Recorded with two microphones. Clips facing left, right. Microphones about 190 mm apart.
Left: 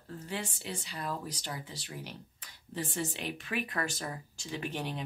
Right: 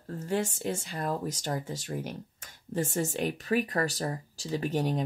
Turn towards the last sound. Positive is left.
turn(degrees=-40)  # may be behind; listen again after turning